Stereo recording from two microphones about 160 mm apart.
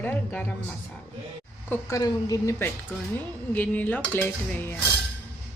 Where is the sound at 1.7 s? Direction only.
20° left (ahead or behind).